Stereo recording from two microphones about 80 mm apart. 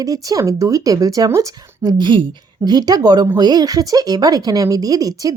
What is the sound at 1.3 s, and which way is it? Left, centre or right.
Speech, right.